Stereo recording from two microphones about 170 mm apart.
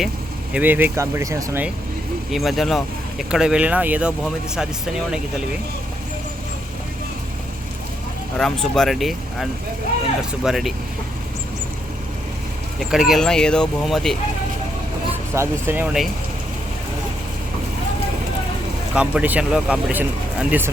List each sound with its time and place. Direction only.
0.5 s speech: 10° right (ahead or behind)
2.3 s speech: centre (ahead or behind)
8.4 s speech: centre (ahead or behind)
12.8 s speech: centre (ahead or behind)
15.4 s speech: 15° right (ahead or behind)
18.9 s speech: 10° right (ahead or behind)